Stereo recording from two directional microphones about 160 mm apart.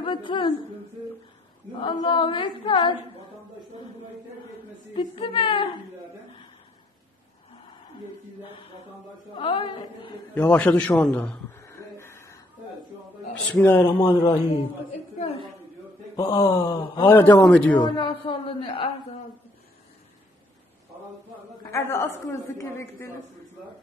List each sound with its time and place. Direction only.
0.0 s a sound: 30° left (ahead or behind)
1.8 s singing: 30° left (ahead or behind)
4.9 s singing: 30° left (ahead or behind)
9.4 s singing: 30° left (ahead or behind)
10.3 s a sound: 10° left (ahead or behind)
13.3 s speech: 10° left (ahead or behind)
13.8 s speech: 30° left (ahead or behind)
16.2 s speech: 20° left (ahead or behind)
17.1 s speech: 15° left (ahead or behind)
17.8 s singing: 30° left (ahead or behind)
21.7 s speech: 15° left (ahead or behind)